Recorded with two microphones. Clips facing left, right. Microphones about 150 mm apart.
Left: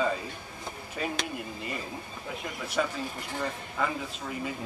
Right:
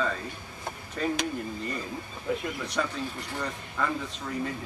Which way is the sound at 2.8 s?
5° left (ahead or behind).